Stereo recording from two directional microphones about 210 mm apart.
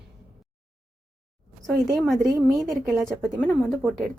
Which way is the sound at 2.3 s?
15° right (ahead or behind).